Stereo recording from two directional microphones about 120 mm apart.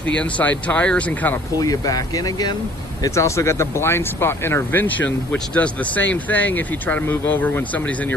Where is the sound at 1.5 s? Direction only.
30° left (ahead or behind).